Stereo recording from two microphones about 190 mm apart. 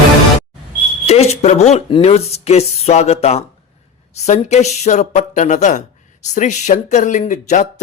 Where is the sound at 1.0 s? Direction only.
35° left (ahead or behind).